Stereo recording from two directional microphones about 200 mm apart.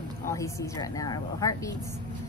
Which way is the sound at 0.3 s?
15° left (ahead or behind).